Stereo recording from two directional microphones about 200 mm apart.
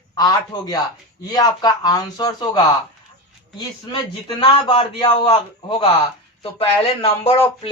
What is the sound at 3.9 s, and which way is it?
Speech, 25° left (ahead or behind).